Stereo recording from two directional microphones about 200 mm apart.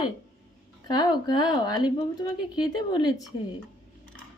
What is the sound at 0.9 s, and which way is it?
Speech, 20° left (ahead or behind).